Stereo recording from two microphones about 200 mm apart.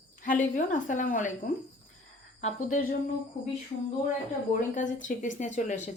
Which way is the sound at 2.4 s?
40° left (ahead or behind).